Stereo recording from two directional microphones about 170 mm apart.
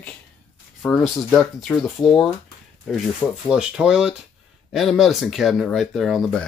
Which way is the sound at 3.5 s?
5° right (ahead or behind).